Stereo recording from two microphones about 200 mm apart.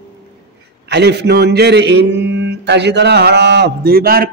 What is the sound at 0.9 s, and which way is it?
A man's voice, 55° right (ahead or behind).